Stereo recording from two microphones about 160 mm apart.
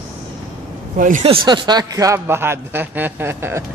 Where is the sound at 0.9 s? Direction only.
55° right (ahead or behind).